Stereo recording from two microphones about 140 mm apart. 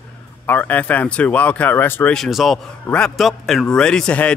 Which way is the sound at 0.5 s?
10° left (ahead or behind).